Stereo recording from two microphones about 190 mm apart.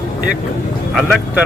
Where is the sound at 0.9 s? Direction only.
Centre (ahead or behind).